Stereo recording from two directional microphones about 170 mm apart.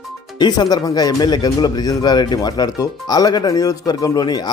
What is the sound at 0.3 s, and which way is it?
Speech, 25° left (ahead or behind).